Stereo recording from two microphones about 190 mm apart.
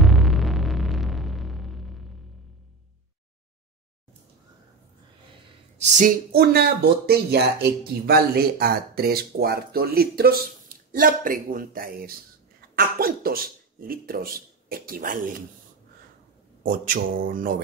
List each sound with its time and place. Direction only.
0.0 s hum: centre (ahead or behind)
5.8 s speech: 40° right (ahead or behind)
16.6 s speech: 45° right (ahead or behind)